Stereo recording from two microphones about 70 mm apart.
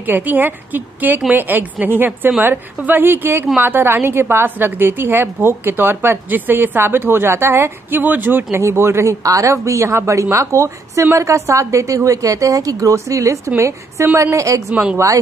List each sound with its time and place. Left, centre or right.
0.0 s a woman's voice: right
8.0 s a woman's voice: right
14.7 s a woman's voice: centre